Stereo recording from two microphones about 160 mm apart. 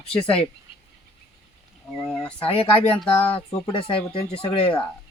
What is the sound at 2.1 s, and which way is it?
Speech, 5° left (ahead or behind).